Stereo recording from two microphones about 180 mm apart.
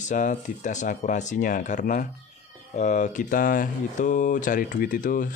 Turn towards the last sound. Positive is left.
turn(degrees=50)  # may be behind; listen again after turning